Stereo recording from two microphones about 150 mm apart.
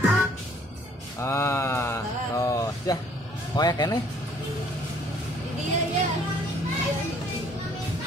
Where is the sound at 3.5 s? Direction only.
25° left (ahead or behind).